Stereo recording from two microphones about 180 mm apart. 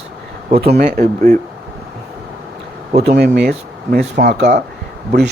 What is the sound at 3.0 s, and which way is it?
Speech, 65° right (ahead or behind).